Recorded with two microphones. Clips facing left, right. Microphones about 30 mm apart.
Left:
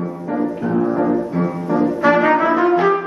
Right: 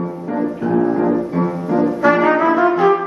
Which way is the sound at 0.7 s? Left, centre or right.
Right.